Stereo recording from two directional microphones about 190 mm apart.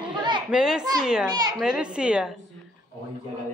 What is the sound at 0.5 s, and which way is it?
A woman's voice, 5° right (ahead or behind).